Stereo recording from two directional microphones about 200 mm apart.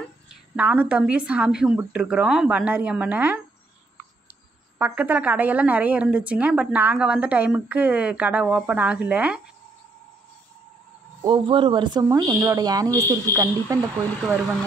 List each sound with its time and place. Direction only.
0.3 s a woman's voice: 5° right (ahead or behind)
4.7 s a woman's voice: 10° right (ahead or behind)
11.2 s speech: 25° right (ahead or behind)